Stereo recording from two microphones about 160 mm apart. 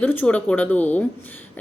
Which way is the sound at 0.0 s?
10° left (ahead or behind).